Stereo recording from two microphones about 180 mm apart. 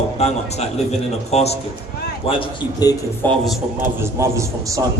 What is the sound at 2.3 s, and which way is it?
Speech, 25° left (ahead or behind).